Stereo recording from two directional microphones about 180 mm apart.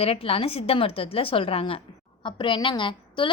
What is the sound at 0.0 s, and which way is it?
A woman's voice, 30° left (ahead or behind).